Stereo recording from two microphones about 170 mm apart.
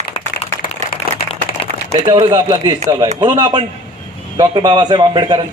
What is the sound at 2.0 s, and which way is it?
A man's voice, 25° right (ahead or behind).